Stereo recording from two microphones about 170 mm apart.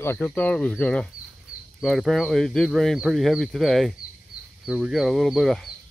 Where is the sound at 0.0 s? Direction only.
15° left (ahead or behind).